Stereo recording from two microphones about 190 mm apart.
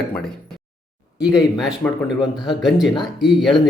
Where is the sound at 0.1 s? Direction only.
5° left (ahead or behind).